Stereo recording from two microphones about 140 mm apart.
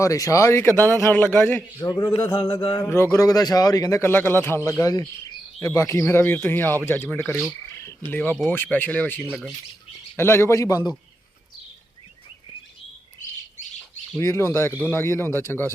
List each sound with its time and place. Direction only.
0.0 s a man's voice: 25° left (ahead or behind)
2.8 s a man's voice: 20° left (ahead or behind)
14.2 s a man's voice: 20° left (ahead or behind)